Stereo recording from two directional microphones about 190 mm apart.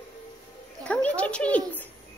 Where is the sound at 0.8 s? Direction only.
5° left (ahead or behind).